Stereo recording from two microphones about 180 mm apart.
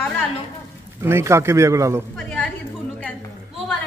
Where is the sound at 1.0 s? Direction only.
15° right (ahead or behind).